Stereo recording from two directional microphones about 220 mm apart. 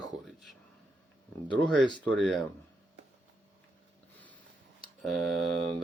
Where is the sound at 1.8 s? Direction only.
20° left (ahead or behind).